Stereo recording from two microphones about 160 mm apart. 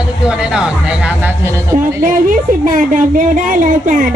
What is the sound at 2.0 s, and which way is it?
A woman's voice, 55° right (ahead or behind).